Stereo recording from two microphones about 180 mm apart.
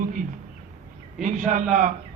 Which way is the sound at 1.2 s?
45° right (ahead or behind).